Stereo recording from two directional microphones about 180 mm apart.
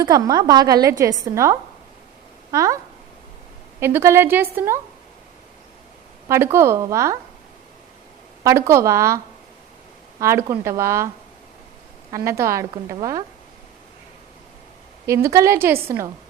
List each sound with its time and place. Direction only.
0.0 s a woman's voice: 20° right (ahead or behind)
3.8 s a woman's voice: 15° right (ahead or behind)
6.2 s a woman's voice: 15° right (ahead or behind)
8.4 s a woman's voice: 15° right (ahead or behind)
12.1 s a woman's voice: 15° right (ahead or behind)
15.0 s a woman's voice: 15° right (ahead or behind)